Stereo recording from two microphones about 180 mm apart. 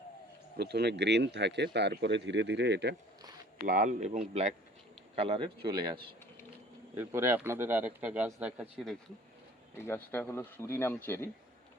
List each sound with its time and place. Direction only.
0.5 s speech: 65° right (ahead or behind)
3.7 s speech: 45° right (ahead or behind)
6.9 s speech: 15° right (ahead or behind)
9.7 s speech: 15° left (ahead or behind)